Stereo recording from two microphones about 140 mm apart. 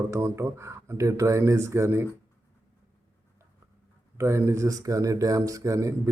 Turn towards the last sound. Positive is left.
turn(degrees=-20)  # may be behind; listen again after turning